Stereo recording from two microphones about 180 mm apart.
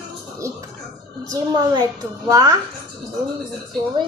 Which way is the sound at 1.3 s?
20° right (ahead or behind).